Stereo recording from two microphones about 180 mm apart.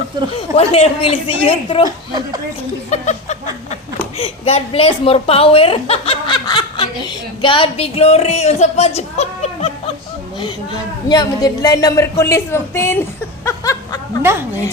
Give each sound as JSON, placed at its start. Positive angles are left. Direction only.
{"t": 0.3, "sound": "a woman's voice", "side_deg": 35}
{"t": 2.9, "sound": "a woman's voice", "side_deg": 40}
{"t": 11.1, "sound": "a woman's voice", "side_deg": 20}
{"t": 13.4, "sound": "snicker", "side_deg": 20}
{"t": 14.2, "sound": "speech", "side_deg": -10}